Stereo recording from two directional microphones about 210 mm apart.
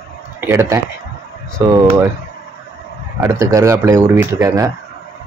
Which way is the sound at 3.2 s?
15° right (ahead or behind).